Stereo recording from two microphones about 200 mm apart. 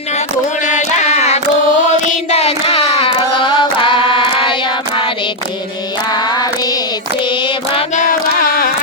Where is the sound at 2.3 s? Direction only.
30° left (ahead or behind).